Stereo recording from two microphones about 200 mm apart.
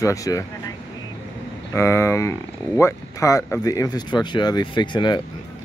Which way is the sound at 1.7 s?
15° left (ahead or behind).